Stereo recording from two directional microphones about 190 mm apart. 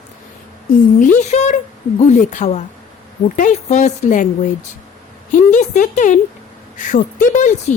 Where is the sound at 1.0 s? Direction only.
40° left (ahead or behind).